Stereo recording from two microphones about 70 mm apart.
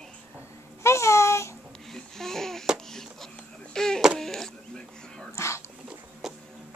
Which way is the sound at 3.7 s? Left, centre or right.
Centre.